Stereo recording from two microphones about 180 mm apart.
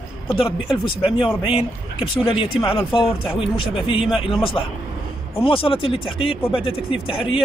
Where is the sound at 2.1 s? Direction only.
30° left (ahead or behind).